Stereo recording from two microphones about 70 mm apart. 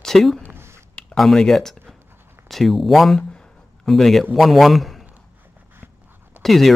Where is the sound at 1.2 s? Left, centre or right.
Centre.